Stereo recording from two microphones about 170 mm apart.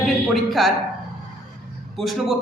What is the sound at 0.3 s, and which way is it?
Speech, centre (ahead or behind).